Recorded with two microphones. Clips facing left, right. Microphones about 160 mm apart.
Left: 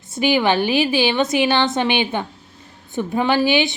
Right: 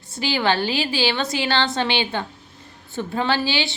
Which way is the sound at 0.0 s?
20° left (ahead or behind).